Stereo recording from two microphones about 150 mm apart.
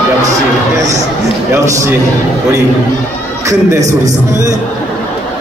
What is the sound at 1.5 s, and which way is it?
Speech, 20° right (ahead or behind).